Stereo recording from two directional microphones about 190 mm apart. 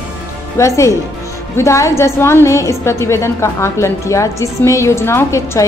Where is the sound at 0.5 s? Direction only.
15° left (ahead or behind).